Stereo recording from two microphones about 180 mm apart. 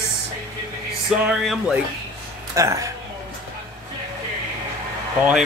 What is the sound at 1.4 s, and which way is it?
Speech, centre (ahead or behind).